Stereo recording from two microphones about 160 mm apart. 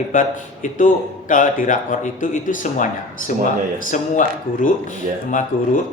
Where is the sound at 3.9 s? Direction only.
55° left (ahead or behind).